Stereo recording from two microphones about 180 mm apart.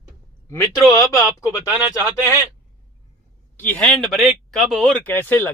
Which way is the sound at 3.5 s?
5° left (ahead or behind).